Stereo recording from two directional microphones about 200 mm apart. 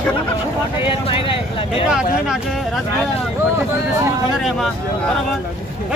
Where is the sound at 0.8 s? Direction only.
30° left (ahead or behind).